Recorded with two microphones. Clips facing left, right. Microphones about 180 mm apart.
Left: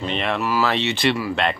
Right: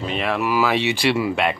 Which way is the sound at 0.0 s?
5° right (ahead or behind).